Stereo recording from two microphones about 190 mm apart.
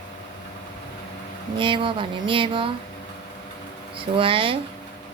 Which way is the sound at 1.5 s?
25° right (ahead or behind).